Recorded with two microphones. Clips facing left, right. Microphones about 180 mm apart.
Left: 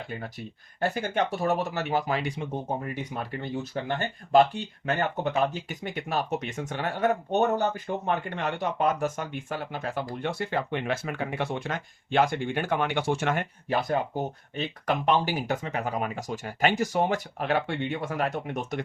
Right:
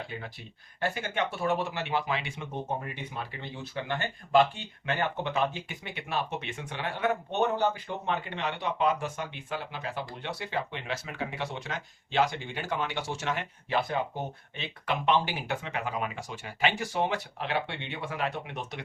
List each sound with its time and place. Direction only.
0.8 s speech: 40° left (ahead or behind)